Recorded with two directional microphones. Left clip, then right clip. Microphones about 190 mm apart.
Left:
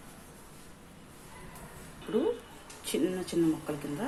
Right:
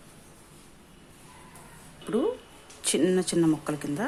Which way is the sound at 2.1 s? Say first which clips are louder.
Right 3 dB; 55° right (ahead or behind).